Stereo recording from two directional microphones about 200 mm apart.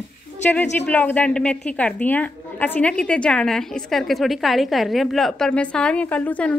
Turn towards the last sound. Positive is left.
turn(degrees=5)  # may be behind; listen again after turning